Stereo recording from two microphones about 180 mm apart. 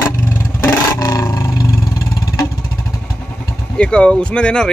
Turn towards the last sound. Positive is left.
turn(degrees=5)  # may be behind; listen again after turning